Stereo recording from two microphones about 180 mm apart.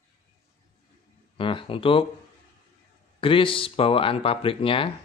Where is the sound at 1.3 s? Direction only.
30° left (ahead or behind).